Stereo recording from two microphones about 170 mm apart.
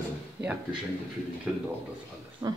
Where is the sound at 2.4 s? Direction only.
20° right (ahead or behind).